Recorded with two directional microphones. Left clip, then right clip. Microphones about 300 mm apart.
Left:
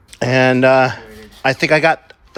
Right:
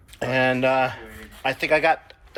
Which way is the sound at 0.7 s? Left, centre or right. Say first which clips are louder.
Left 8 dB; left.